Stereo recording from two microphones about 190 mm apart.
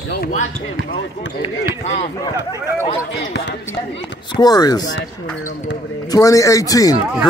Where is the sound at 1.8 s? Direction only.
35° left (ahead or behind).